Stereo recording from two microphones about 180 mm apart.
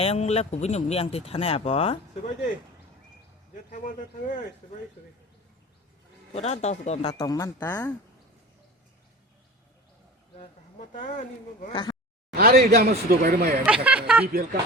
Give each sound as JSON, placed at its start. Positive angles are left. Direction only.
{"t": 0.0, "sound": "speech", "side_deg": 35}
{"t": 3.7, "sound": "speech", "side_deg": 45}
{"t": 6.3, "sound": "speech", "side_deg": 40}
{"t": 7.1, "sound": "speech", "side_deg": 20}
{"t": 10.3, "sound": "speech", "side_deg": 45}
{"t": 11.7, "sound": "speech", "side_deg": 25}
{"t": 12.3, "sound": "speech", "side_deg": -55}
{"t": 13.7, "sound": "speech", "side_deg": -5}